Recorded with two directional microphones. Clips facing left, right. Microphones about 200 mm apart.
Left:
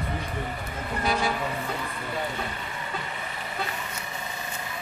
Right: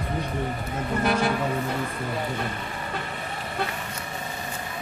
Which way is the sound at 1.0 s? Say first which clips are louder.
Right 3 dB; 60° right (ahead or behind).